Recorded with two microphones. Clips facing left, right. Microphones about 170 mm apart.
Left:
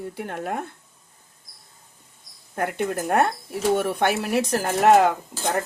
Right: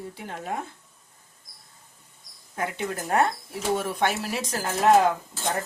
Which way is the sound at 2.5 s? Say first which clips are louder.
Left 5 dB; 55° left (ahead or behind).